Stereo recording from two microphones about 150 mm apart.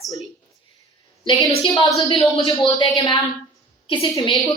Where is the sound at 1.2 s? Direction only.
35° left (ahead or behind).